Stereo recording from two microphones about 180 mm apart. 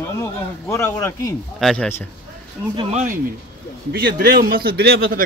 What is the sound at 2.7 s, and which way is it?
Speech, 25° right (ahead or behind).